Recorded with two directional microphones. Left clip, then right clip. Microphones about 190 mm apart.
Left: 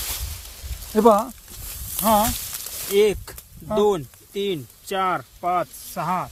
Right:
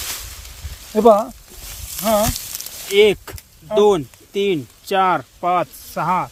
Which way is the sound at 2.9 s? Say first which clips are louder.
Right 5 dB; 35° right (ahead or behind).